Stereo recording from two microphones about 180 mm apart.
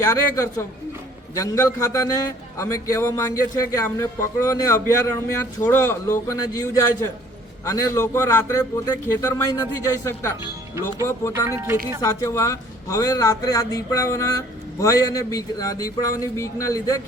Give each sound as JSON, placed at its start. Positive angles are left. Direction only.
{"t": 0.0, "sound": "a man's voice", "side_deg": 15}
{"t": 10.4, "sound": "speech", "side_deg": -15}
{"t": 12.0, "sound": "a man's voice", "side_deg": 15}